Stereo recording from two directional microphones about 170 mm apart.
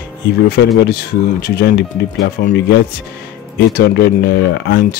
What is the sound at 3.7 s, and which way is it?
Speech, 70° left (ahead or behind).